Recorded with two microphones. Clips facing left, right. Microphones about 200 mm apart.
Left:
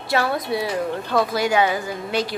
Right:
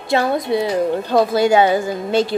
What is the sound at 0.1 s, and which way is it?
A woman's voice, 25° right (ahead or behind).